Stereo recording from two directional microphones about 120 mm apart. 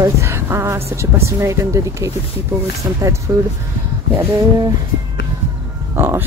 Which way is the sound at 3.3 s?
25° right (ahead or behind).